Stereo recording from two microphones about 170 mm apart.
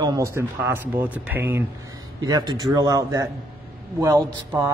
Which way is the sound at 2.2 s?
25° right (ahead or behind).